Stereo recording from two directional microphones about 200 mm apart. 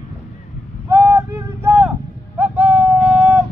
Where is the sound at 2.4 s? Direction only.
10° right (ahead or behind).